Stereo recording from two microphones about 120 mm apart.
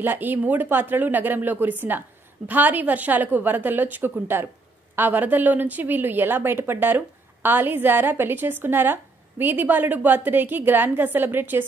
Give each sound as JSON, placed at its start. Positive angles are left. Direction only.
{"t": 0.0, "sound": "a woman's voice", "side_deg": -15}